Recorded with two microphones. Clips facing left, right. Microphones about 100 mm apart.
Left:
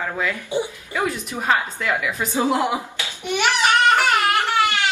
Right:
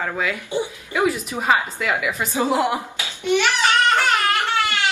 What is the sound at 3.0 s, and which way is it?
Babbling, 15° left (ahead or behind).